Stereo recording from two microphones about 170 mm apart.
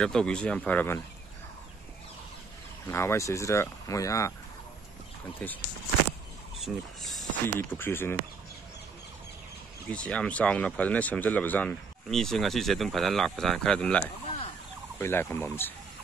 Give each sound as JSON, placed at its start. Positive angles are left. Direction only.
{"t": 0.0, "sound": "speech", "side_deg": 5}
{"t": 2.9, "sound": "speech", "side_deg": 15}
{"t": 5.4, "sound": "speech", "side_deg": 10}
{"t": 6.6, "sound": "speech", "side_deg": 0}
{"t": 7.4, "sound": "speech", "side_deg": 15}
{"t": 9.8, "sound": "speech", "side_deg": 5}